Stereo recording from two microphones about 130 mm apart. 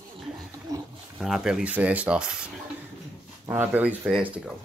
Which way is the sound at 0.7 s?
25° right (ahead or behind).